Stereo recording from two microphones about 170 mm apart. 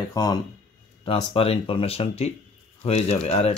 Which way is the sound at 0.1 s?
25° left (ahead or behind).